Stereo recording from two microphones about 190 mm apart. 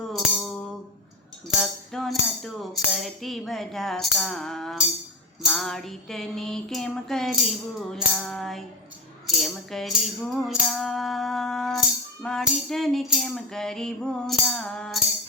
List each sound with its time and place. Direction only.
0.1 s music: centre (ahead or behind)
1.5 s speech: centre (ahead or behind)
5.4 s music: centre (ahead or behind)